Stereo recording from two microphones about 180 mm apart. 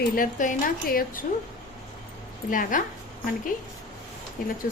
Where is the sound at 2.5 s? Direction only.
50° left (ahead or behind).